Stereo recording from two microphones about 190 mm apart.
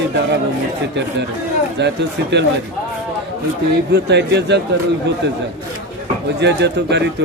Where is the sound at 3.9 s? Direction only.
65° right (ahead or behind).